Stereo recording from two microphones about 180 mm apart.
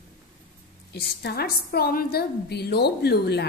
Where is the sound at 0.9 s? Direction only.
60° left (ahead or behind).